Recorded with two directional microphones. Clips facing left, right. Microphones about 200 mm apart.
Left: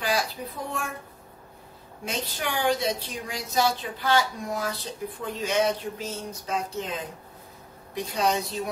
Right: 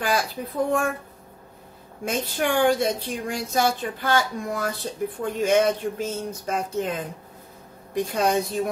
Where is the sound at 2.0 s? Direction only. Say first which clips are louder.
Right 6 dB; 50° right (ahead or behind).